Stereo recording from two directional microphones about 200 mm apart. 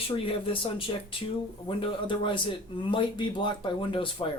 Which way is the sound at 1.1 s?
25° left (ahead or behind).